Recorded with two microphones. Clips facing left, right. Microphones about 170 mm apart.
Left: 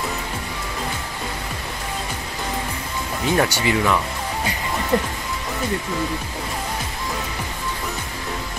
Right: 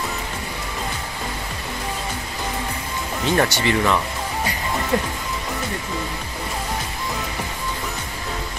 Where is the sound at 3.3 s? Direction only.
10° left (ahead or behind).